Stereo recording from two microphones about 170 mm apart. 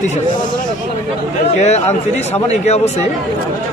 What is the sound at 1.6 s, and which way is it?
Speech, 40° left (ahead or behind).